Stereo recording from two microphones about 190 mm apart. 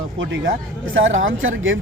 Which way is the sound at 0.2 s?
90° right.